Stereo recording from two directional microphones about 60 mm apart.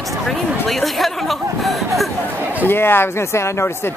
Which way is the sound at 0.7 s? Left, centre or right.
Centre.